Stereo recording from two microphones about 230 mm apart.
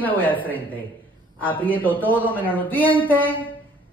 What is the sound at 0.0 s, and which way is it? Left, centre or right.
A man's voice, centre.